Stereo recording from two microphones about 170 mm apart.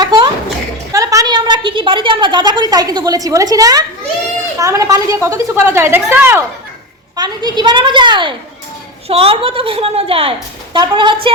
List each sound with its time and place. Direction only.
0.0 s a sound: 25° right (ahead or behind)
4.5 s a woman's voice: 20° right (ahead or behind)
7.2 s a woman's voice: 25° right (ahead or behind)